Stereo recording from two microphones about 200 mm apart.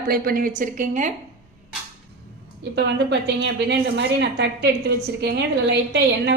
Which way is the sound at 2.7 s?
60° right (ahead or behind).